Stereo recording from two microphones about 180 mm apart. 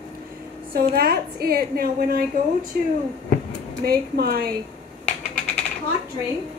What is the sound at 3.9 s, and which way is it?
Speech, 55° right (ahead or behind).